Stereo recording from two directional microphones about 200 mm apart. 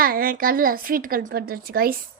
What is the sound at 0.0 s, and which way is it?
A child's voice, 45° right (ahead or behind).